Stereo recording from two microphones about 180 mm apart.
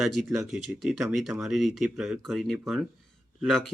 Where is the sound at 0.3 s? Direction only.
Centre (ahead or behind).